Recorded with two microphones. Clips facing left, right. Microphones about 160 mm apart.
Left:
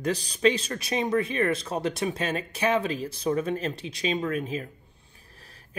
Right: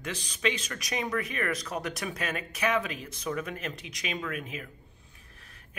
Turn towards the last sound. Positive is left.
turn(degrees=30)  # may be behind; listen again after turning